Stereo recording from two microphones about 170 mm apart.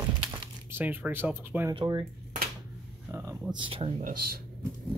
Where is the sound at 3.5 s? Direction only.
30° right (ahead or behind).